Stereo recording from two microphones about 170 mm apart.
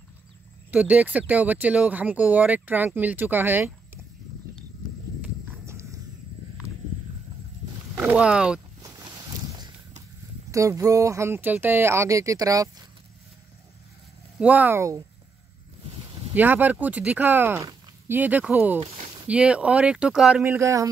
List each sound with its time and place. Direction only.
0.7 s speech: 10° right (ahead or behind)
5.2 s horse: 15° right (ahead or behind)
7.9 s boat: 10° right (ahead or behind)
10.5 s speech: 20° right (ahead or behind)
14.4 s speech: 10° right (ahead or behind)
16.3 s speech: 10° right (ahead or behind)
18.8 s speech: 35° right (ahead or behind)
19.2 s speech: 5° right (ahead or behind)
20.4 s speech: 15° right (ahead or behind)